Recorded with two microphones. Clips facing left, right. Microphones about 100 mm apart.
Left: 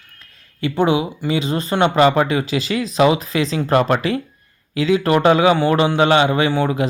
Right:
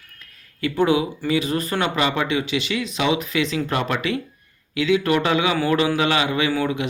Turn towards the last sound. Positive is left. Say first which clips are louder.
# left 4 dB
turn(degrees=35)  # may be behind; listen again after turning